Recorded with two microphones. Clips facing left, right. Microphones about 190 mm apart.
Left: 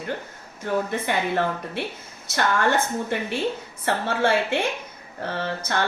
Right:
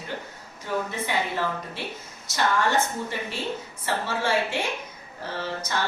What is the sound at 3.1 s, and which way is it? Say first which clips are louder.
A woman's voice: left 5 dB; 55° left (ahead or behind).